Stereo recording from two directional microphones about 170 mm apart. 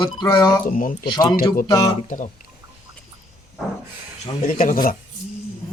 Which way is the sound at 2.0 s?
50° left (ahead or behind).